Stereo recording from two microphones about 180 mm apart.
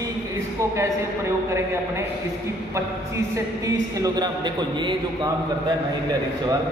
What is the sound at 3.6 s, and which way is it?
A man's voice, 20° right (ahead or behind).